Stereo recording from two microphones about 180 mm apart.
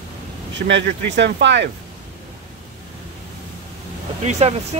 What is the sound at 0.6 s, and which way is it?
Speech, 80° right.